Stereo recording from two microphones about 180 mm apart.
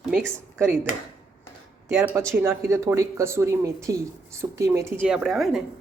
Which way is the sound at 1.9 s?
15° right (ahead or behind).